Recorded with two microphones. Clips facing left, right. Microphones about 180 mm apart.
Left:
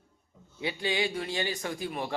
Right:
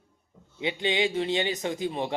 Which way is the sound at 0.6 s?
20° right (ahead or behind).